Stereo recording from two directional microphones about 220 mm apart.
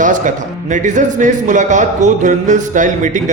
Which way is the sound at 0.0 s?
35° right (ahead or behind).